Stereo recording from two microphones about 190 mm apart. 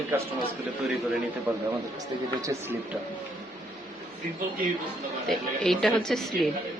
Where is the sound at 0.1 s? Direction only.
15° right (ahead or behind).